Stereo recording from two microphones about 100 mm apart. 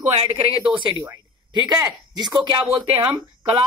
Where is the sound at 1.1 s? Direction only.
45° right (ahead or behind).